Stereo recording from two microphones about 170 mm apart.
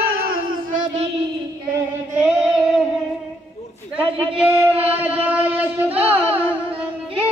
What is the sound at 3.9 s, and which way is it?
Speech, 5° right (ahead or behind).